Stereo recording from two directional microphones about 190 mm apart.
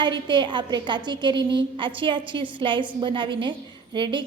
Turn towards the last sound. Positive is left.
turn(degrees=-25)  # may be behind; listen again after turning